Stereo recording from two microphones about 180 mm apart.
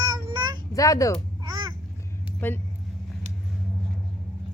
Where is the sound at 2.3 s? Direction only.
10° left (ahead or behind).